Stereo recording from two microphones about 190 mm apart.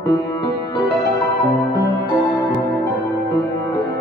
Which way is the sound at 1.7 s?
60° right (ahead or behind).